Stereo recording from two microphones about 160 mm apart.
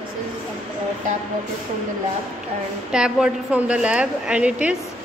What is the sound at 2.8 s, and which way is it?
A woman's voice, 5° right (ahead or behind).